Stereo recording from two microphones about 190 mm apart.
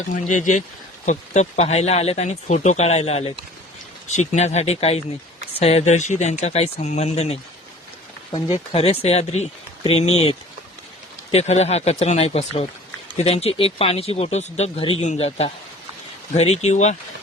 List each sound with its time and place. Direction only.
0.1 s speech: 40° left (ahead or behind)
8.5 s speech: 30° left (ahead or behind)
11.3 s speech: 35° left (ahead or behind)